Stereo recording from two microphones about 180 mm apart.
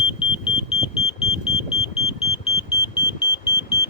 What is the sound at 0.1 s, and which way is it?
Smoke detector, 30° left (ahead or behind).